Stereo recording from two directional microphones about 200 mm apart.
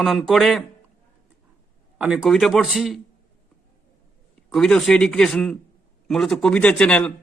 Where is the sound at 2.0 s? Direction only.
5° right (ahead or behind).